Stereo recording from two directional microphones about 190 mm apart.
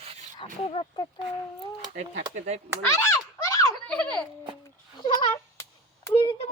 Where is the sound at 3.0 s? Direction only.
15° left (ahead or behind).